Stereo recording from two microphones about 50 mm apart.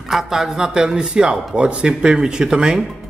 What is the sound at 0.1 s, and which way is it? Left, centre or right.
A man's voice, centre.